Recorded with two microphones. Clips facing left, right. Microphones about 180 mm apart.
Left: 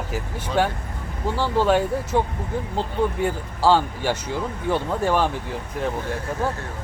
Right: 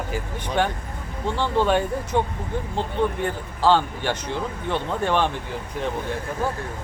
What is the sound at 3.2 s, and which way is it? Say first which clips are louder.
Speech: left 1 dB; 10° left (ahead or behind).